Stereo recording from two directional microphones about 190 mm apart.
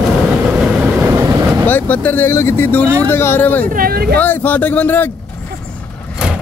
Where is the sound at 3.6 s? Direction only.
50° right (ahead or behind).